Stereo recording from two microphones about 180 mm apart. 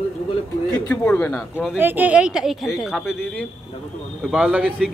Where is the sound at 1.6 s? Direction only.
5° right (ahead or behind).